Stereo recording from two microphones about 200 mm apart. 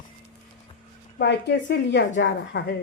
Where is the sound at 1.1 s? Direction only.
60° left (ahead or behind).